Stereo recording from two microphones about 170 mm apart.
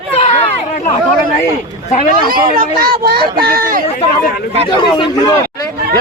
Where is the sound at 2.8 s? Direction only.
65° right (ahead or behind).